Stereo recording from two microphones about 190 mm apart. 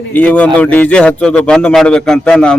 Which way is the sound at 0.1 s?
5° left (ahead or behind).